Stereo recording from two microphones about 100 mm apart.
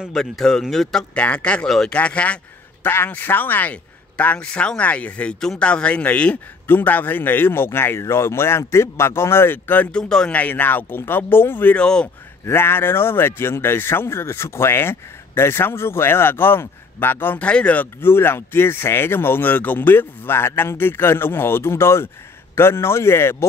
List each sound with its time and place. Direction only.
0.0 s speech: centre (ahead or behind); by 11.8 s 20° left (ahead or behind)
11.8 s speech: 10° left (ahead or behind)
12.4 s speech: 25° left (ahead or behind)
18.0 s speech: 25° left (ahead or behind)